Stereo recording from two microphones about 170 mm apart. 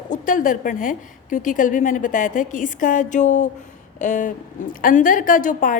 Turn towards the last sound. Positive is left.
turn(degrees=50)  # may be behind; listen again after turning